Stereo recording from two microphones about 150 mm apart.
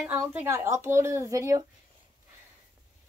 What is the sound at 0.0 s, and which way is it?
Speech, 15° right (ahead or behind).